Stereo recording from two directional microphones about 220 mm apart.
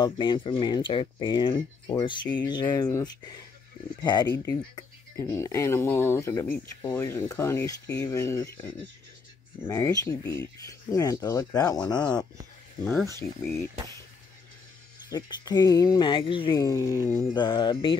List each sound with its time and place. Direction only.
0.0 s speech: 20° left (ahead or behind)
15.0 s speech: 20° left (ahead or behind)